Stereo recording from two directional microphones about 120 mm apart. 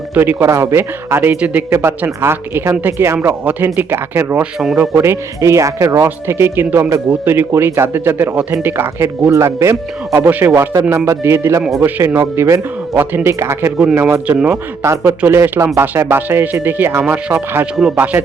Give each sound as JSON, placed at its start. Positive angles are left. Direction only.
{"t": 0.1, "sound": "speech", "side_deg": -15}
{"t": 4.6, "sound": "speech", "side_deg": -5}
{"t": 4.9, "sound": "speech", "side_deg": -20}